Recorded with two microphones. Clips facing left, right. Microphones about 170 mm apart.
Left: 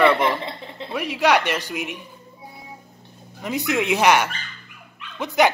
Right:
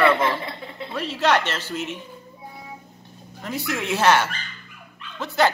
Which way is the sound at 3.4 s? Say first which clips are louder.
Left 5 dB; 20° left (ahead or behind).